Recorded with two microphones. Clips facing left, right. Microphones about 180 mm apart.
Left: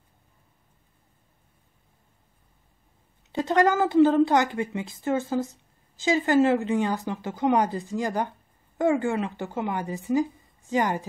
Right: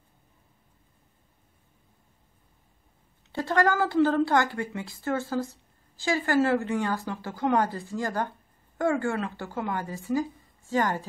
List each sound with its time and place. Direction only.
3.3 s a woman's voice: 20° left (ahead or behind)